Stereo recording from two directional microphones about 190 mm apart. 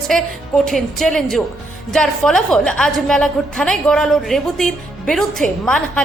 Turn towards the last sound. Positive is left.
turn(degrees=5)  # may be behind; listen again after turning